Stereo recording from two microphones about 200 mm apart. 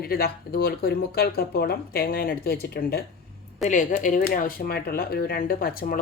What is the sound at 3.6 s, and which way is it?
Speech, 40° left (ahead or behind).